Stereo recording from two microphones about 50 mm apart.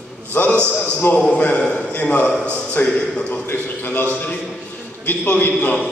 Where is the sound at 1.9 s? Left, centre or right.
Left.